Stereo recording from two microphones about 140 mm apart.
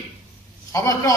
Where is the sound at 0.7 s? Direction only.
25° left (ahead or behind).